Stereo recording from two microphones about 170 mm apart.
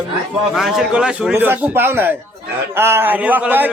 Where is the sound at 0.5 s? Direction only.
Centre (ahead or behind).